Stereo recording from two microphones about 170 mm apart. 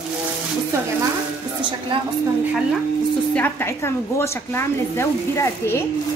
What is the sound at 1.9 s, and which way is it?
Speech, 30° right (ahead or behind).